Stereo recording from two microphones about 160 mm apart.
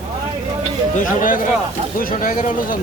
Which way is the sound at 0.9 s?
60° left (ahead or behind).